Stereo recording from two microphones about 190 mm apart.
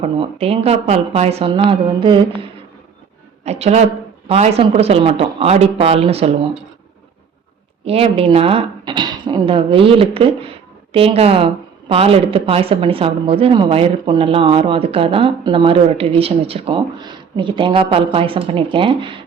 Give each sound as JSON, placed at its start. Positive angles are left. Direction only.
{"t": 0.0, "sound": "speech", "side_deg": -30}
{"t": 3.4, "sound": "a woman's voice", "side_deg": -35}
{"t": 7.9, "sound": "a woman's voice", "side_deg": -30}